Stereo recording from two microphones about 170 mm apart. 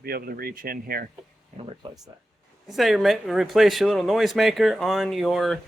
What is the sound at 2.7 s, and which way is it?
Speech, centre (ahead or behind).